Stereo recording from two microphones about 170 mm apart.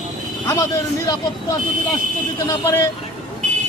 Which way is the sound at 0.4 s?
20° left (ahead or behind).